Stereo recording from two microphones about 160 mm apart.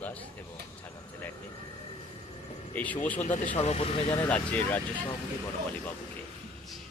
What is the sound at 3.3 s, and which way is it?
Speech, 50° left (ahead or behind).